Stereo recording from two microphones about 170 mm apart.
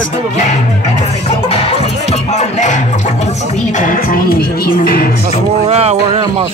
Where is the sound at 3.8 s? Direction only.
55° left (ahead or behind).